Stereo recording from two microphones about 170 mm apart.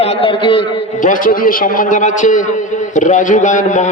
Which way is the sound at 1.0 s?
50° left (ahead or behind).